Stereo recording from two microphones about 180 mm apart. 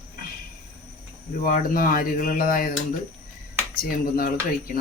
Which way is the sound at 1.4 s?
50° left (ahead or behind).